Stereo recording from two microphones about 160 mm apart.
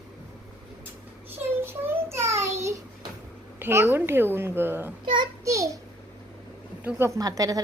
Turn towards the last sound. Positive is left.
turn(degrees=-20)  # may be behind; listen again after turning